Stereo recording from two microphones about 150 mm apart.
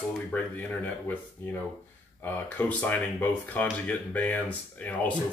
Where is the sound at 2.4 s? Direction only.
10° left (ahead or behind).